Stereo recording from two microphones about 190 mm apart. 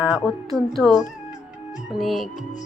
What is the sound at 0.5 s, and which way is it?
Speech, centre (ahead or behind).